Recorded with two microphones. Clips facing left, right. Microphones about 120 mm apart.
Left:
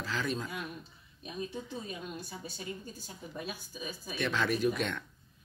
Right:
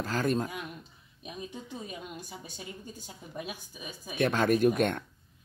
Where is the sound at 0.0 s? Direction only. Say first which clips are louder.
Right 6 dB; 50° right (ahead or behind).